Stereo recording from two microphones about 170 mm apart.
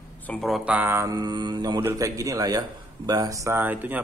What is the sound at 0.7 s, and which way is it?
Speech, 15° right (ahead or behind).